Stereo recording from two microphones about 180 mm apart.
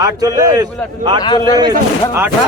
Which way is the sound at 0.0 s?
20° right (ahead or behind).